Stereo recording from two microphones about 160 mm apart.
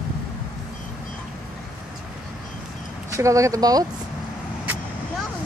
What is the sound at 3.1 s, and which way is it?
Speech, 20° right (ahead or behind).